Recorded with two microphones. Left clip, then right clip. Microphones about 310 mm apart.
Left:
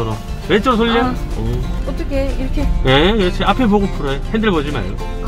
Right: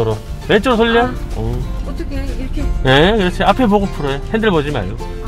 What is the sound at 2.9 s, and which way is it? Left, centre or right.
Speech, right.